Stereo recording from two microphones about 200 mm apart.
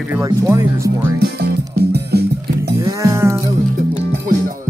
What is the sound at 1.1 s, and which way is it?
Music, 55° right (ahead or behind).